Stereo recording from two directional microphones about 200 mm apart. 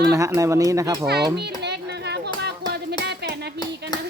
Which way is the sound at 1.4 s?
55° right (ahead or behind).